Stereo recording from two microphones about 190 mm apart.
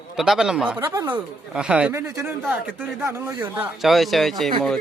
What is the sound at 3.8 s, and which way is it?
Speech, centre (ahead or behind).